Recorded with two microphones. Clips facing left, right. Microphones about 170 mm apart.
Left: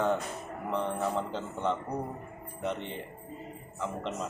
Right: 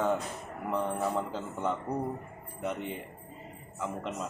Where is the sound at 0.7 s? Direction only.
5° right (ahead or behind).